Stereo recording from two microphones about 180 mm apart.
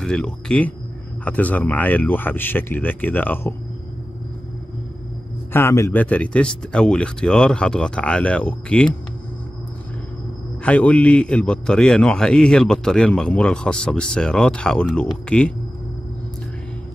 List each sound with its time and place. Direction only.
0.0 s a man's voice: 5° left (ahead or behind)
5.5 s a man's voice: 15° left (ahead or behind)
10.6 s a man's voice: 5° left (ahead or behind)